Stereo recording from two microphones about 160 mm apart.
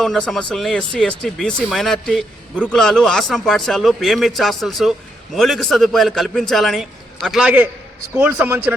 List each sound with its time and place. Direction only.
0.0 s a man's voice: centre (ahead or behind)